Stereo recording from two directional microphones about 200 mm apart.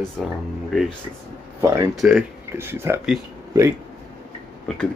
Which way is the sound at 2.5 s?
10° right (ahead or behind).